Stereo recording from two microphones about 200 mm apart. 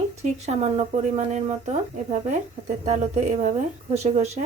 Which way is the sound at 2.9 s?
35° right (ahead or behind).